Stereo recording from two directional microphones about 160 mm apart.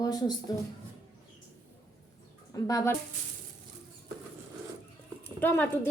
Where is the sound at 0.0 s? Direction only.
25° left (ahead or behind).